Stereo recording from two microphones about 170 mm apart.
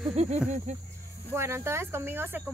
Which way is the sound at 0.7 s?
40° right (ahead or behind).